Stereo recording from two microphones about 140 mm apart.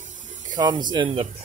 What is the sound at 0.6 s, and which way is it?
Speech, 30° right (ahead or behind).